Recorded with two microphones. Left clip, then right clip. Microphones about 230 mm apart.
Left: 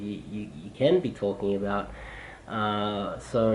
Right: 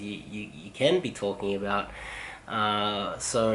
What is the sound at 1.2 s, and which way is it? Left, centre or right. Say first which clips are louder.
Speech: left 2 dB; left.